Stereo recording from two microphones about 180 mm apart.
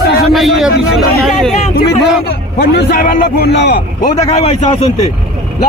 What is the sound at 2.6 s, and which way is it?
A man's voice, 55° left (ahead or behind).